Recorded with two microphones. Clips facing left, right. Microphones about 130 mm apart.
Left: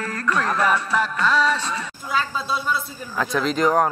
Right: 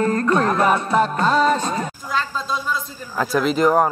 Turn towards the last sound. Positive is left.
turn(degrees=-5)  # may be behind; listen again after turning